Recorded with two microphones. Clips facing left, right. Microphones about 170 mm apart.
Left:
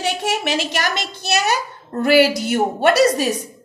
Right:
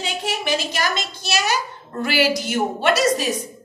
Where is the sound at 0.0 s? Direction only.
75° left (ahead or behind).